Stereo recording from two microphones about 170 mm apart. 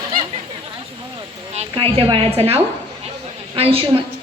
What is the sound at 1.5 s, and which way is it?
A woman's voice, 35° right (ahead or behind).